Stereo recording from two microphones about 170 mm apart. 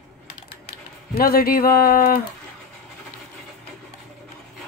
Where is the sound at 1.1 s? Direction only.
60° left (ahead or behind).